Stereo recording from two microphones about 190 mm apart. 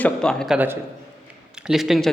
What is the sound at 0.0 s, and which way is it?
A man's voice, 5° left (ahead or behind).